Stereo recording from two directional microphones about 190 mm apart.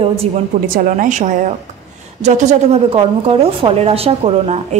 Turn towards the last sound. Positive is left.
turn(degrees=-35)  # may be behind; listen again after turning